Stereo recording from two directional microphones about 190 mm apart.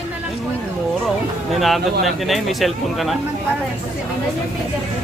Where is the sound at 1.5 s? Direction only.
Centre (ahead or behind).